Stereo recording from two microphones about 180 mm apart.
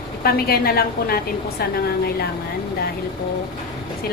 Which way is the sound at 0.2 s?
55° left (ahead or behind).